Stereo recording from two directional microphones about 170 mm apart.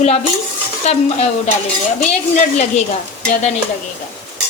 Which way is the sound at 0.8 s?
40° left (ahead or behind).